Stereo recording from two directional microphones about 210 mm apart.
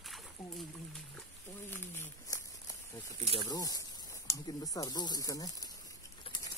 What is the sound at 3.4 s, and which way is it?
Snake, 20° left (ahead or behind).